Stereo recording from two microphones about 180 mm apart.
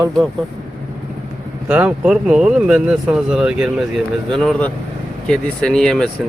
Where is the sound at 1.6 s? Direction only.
5° right (ahead or behind).